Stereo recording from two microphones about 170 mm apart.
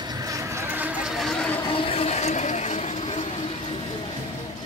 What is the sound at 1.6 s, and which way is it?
Vehicle, 30° left (ahead or behind).